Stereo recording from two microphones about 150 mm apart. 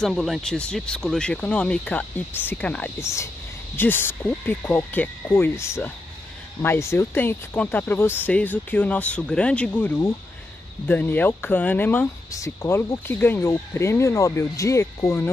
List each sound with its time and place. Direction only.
0.0 s speech: centre (ahead or behind); by 15.3 s 20° left (ahead or behind)